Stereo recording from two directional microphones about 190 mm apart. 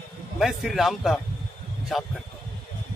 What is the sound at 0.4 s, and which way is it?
A man's voice, centre (ahead or behind).